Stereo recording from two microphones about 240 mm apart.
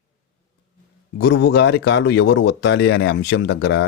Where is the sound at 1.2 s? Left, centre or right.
Left.